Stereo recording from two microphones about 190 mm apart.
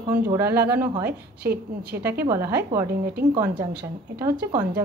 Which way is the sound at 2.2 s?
15° right (ahead or behind).